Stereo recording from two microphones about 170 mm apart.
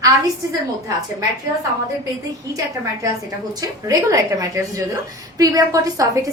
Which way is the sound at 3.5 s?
20° right (ahead or behind).